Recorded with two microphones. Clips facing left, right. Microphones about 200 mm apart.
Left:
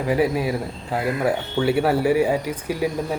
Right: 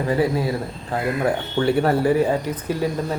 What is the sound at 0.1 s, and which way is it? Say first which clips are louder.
Speech: left 1 dB; 10° left (ahead or behind).